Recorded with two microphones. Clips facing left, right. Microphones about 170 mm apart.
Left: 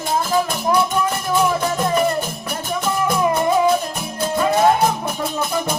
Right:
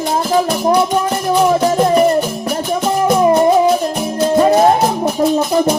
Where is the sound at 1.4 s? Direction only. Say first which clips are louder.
Right 7 dB; 35° right (ahead or behind).